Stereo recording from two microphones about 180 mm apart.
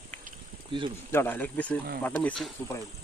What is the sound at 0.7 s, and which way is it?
Speech, 30° right (ahead or behind).